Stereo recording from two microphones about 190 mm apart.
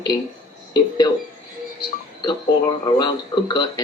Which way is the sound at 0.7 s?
20° left (ahead or behind).